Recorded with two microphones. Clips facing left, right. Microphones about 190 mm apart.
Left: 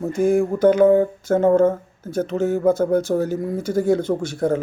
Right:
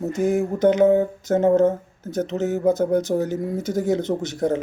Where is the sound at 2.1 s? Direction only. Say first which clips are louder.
Left 2 dB; 20° right (ahead or behind).